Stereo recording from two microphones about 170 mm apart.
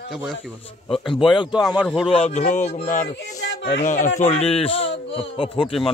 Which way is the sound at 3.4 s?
90° left.